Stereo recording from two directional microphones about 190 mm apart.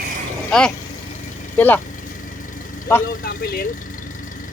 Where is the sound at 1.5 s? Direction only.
10° left (ahead or behind).